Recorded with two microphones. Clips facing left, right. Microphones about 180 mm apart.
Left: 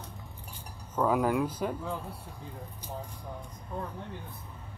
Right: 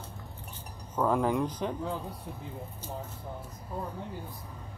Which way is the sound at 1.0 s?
5° left (ahead or behind).